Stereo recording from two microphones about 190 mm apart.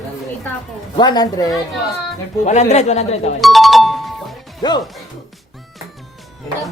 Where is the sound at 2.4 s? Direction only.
40° left (ahead or behind).